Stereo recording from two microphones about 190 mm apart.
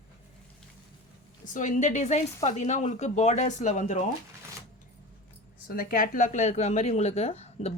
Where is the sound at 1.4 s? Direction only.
40° left (ahead or behind).